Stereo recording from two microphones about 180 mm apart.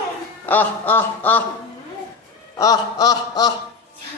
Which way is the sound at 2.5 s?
20° left (ahead or behind).